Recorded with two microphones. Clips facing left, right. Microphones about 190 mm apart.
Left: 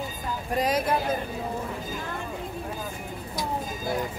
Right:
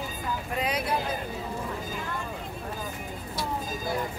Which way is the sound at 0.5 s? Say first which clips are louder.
Left 6 dB; 40° left (ahead or behind).